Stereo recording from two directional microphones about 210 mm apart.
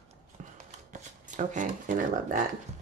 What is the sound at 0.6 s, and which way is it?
Shuffling cards, 35° right (ahead or behind).